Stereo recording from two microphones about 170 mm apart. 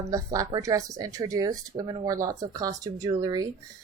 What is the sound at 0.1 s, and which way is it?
Speech, 20° right (ahead or behind).